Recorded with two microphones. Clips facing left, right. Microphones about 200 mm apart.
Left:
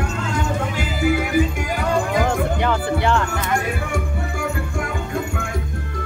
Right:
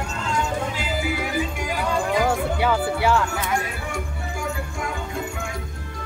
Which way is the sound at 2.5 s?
5° right (ahead or behind).